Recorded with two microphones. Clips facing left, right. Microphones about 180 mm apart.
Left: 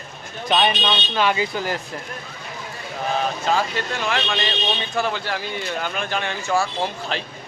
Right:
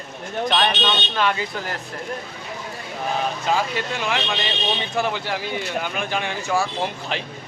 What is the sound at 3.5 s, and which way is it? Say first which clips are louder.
Speech: even; 15° right (ahead or behind).